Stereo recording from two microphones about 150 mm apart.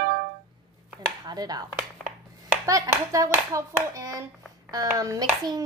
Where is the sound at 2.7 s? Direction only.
20° right (ahead or behind).